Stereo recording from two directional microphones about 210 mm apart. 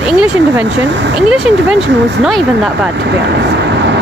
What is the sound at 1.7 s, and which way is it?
Speech, 55° right (ahead or behind).